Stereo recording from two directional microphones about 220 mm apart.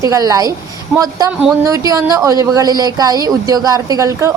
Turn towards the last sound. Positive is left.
turn(degrees=-15)  # may be behind; listen again after turning